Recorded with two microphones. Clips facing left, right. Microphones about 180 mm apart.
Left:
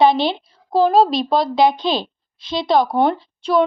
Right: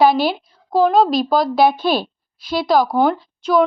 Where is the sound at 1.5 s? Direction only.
20° left (ahead or behind).